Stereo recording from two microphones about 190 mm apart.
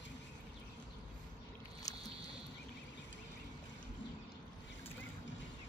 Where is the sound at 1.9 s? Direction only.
20° left (ahead or behind).